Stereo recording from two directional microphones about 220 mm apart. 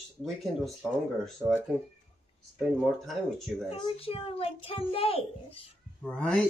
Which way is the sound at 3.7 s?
25° left (ahead or behind).